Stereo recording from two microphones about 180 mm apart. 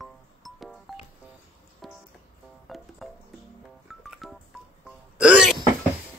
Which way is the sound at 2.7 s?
Centre (ahead or behind).